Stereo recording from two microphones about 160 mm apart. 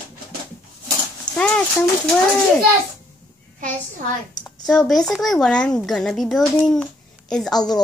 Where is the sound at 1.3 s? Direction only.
25° left (ahead or behind).